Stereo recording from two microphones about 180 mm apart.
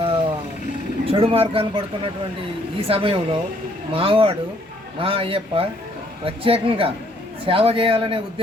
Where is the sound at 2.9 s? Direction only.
30° right (ahead or behind).